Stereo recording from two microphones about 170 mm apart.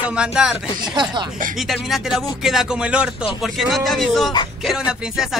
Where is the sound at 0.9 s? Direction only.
25° right (ahead or behind).